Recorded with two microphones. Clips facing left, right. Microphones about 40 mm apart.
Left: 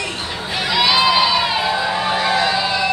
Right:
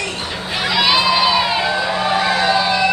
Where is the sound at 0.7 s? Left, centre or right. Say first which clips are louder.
Even; centre.